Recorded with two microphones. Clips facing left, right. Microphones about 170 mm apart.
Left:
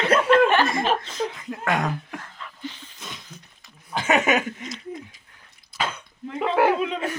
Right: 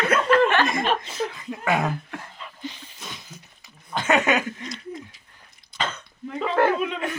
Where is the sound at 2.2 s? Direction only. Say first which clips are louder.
Even; 15° right (ahead or behind).